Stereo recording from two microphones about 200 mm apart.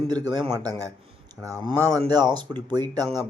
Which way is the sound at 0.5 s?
20° right (ahead or behind).